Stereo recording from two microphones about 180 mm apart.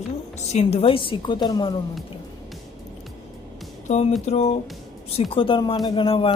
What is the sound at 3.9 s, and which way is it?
Speech, 35° left (ahead or behind).